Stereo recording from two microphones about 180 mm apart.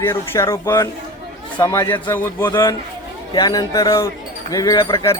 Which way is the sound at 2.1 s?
10° left (ahead or behind).